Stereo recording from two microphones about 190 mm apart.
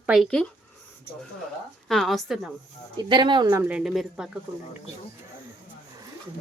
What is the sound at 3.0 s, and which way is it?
Speech, 25° right (ahead or behind).